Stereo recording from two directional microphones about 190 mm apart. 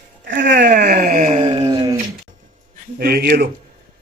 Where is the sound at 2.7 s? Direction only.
55° right (ahead or behind).